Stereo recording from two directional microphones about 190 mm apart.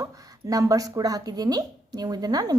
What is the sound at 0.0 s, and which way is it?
A woman's voice, 15° right (ahead or behind).